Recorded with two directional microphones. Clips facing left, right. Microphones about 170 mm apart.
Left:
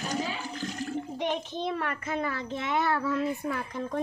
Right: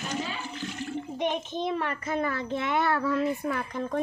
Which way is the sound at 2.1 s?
45° right (ahead or behind).